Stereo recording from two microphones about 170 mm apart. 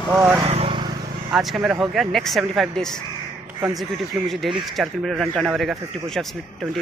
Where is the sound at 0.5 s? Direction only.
35° right (ahead or behind).